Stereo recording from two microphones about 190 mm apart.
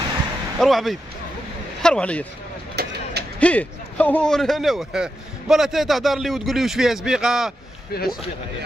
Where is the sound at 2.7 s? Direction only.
60° right (ahead or behind).